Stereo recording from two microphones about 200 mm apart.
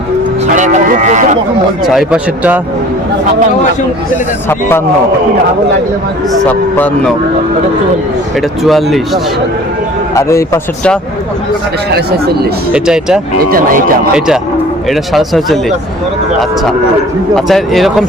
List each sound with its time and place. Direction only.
0.5 s speech: 40° right (ahead or behind)
1.9 s speech: 5° right (ahead or behind)
6.4 s a man's voice: 10° left (ahead or behind)
8.6 s speech: centre (ahead or behind)
10.2 s a man's voice: 15° left (ahead or behind)
11.9 s speech: 50° right (ahead or behind)
12.7 s speech: 5° right (ahead or behind)
13.5 s speech: 45° right (ahead or behind)
14.8 s speech: centre (ahead or behind)
17.3 s speech: centre (ahead or behind)